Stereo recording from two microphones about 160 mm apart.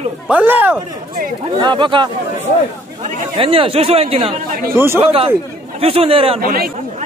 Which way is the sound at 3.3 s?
35° right (ahead or behind).